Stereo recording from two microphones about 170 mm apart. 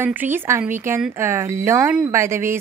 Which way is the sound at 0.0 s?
10° right (ahead or behind).